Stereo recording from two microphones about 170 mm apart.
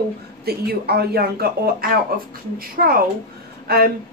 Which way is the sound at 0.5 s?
65° right (ahead or behind).